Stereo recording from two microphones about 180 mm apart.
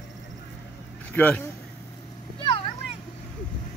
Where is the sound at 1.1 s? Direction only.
10° left (ahead or behind).